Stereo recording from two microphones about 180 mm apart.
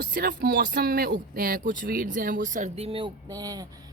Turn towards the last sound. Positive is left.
turn(degrees=-20)  # may be behind; listen again after turning